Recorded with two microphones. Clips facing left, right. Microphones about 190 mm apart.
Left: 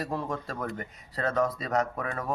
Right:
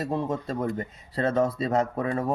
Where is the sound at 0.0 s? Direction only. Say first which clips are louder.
Right 4 dB; 25° right (ahead or behind).